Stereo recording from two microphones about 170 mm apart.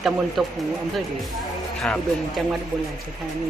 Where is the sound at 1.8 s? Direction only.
Centre (ahead or behind).